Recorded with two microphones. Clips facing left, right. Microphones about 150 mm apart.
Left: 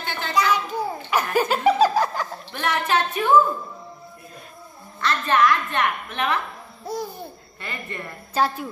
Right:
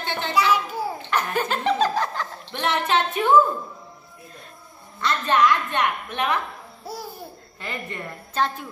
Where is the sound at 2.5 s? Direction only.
25° right (ahead or behind).